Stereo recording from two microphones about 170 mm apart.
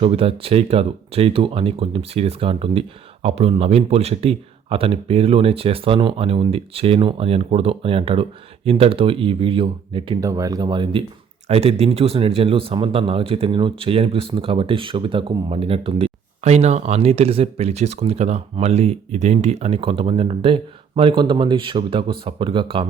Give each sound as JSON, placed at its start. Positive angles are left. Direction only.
{"t": 0.0, "sound": "speech", "side_deg": -35}
{"t": 11.4, "sound": "speech", "side_deg": -35}